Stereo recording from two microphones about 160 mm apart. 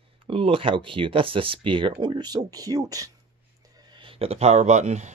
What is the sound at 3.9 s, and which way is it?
Speech, 35° right (ahead or behind).